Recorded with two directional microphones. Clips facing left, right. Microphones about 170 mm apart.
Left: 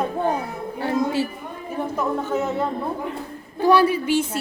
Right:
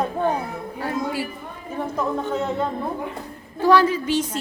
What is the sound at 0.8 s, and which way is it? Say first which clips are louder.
Speech: left 4 dB; 25° left (ahead or behind).